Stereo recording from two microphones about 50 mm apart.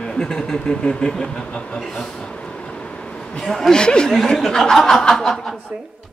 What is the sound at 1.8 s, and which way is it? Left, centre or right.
Speech, centre.